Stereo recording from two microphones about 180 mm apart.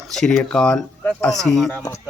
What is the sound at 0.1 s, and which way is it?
Speech, centre (ahead or behind).